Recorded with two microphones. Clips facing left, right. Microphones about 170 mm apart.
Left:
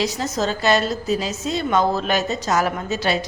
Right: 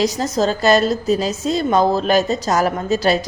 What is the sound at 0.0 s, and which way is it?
A woman's voice, 40° right (ahead or behind).